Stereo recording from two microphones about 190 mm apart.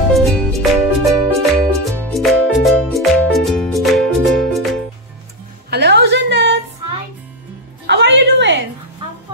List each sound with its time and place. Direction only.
0.1 s music: centre (ahead or behind)
5.7 s a sound: 60° right (ahead or behind)
7.8 s music: 65° right (ahead or behind)